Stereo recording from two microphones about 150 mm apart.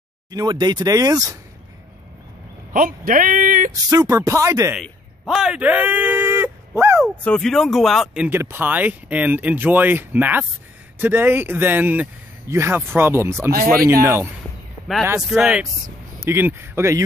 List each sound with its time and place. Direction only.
0.3 s speech: 25° right (ahead or behind)
2.7 s speech: 65° right (ahead or behind)
3.9 s speech: 25° right (ahead or behind)
4.8 s speech: centre (ahead or behind)
7.2 s speech: 5° left (ahead or behind); by 13.5 s 15° right (ahead or behind)
13.5 s speech: 70° right (ahead or behind)
14.0 s speech: 15° right (ahead or behind)
16.2 s speech: 15° right (ahead or behind)